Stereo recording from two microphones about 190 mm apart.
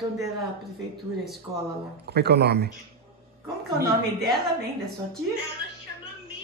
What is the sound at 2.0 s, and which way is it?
Speech, 60° right (ahead or behind).